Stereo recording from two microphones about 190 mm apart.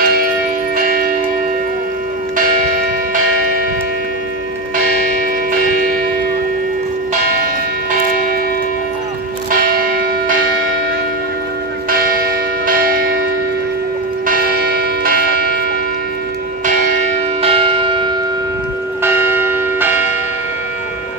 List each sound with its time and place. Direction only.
0.0 s church bell: 50° right (ahead or behind)
9.6 s church bell: 50° right (ahead or behind)
14.2 s church bell: 50° right (ahead or behind)
17.4 s church bell: 30° right (ahead or behind)
19.0 s church bell: 10° right (ahead or behind)